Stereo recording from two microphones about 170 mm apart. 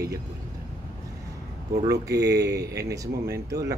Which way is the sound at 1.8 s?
20° right (ahead or behind).